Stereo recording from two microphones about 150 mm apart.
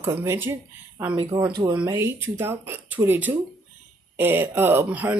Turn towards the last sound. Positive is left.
turn(degrees=-10)  # may be behind; listen again after turning